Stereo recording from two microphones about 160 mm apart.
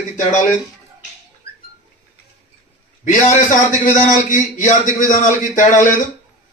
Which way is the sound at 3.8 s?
55° left (ahead or behind).